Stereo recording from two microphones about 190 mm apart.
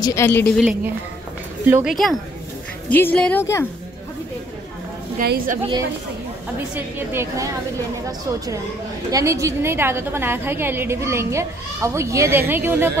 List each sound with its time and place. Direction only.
0.0 s a woman's voice: 15° left (ahead or behind)
0.5 s a woman's voice: centre (ahead or behind)
2.9 s a woman's voice: 10° left (ahead or behind)
5.2 s a woman's voice: 55° right (ahead or behind)
6.7 s a woman's voice: 10° right (ahead or behind)
9.1 s a woman's voice: 15° right (ahead or behind)